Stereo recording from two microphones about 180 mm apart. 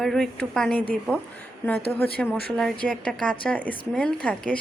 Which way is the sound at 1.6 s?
15° left (ahead or behind).